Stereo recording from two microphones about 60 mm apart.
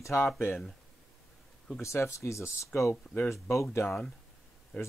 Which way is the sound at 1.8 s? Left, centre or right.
Left.